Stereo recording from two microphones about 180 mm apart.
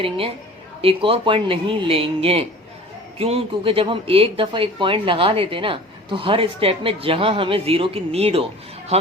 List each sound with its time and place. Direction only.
0.8 s speech: 30° right (ahead or behind)